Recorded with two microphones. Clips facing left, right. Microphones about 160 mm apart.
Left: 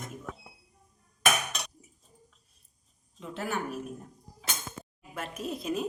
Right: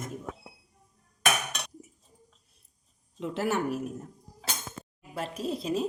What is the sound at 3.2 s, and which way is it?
Speech, 75° right (ahead or behind).